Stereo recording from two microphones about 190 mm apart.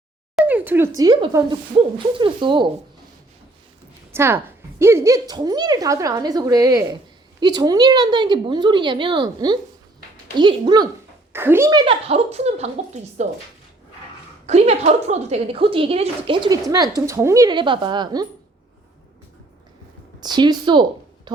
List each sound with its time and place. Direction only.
0.3 s speech: 10° right (ahead or behind)
0.9 s a woman's voice: 20° right (ahead or behind)
4.1 s a woman's voice: 15° right (ahead or behind)
11.3 s a child's voice: 10° right (ahead or behind)
11.9 s speech: 30° right (ahead or behind)
14.4 s a woman's voice: 35° right (ahead or behind)
20.2 s a woman's voice: 20° right (ahead or behind)
21.3 s a sound: 20° right (ahead or behind)